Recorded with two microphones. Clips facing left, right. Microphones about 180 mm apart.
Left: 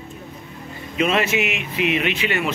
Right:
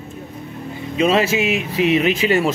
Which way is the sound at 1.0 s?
30° right (ahead or behind).